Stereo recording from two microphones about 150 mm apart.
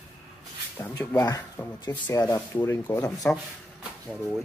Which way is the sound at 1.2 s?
25° left (ahead or behind).